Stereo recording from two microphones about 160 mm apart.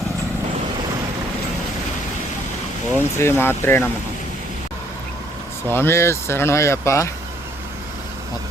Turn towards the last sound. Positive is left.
turn(degrees=20)  # may be behind; listen again after turning